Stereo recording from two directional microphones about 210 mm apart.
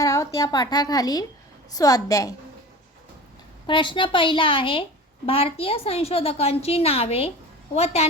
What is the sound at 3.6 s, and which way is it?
A woman's voice, 25° left (ahead or behind).